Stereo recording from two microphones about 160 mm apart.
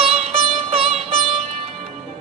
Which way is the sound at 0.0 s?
40° right (ahead or behind).